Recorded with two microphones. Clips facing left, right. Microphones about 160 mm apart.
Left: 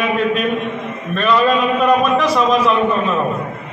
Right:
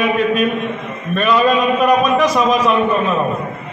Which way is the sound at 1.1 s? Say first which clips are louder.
Right 1 dB; 5° right (ahead or behind).